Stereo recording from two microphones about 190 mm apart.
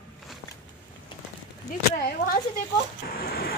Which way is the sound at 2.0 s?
50° left (ahead or behind).